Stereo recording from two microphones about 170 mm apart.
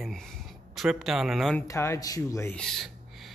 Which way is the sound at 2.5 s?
Centre (ahead or behind).